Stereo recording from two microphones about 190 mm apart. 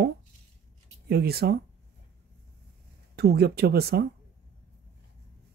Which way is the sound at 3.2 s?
55° right (ahead or behind).